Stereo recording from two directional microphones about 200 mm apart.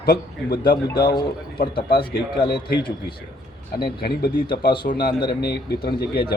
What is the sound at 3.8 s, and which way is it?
Speech, 50° left (ahead or behind).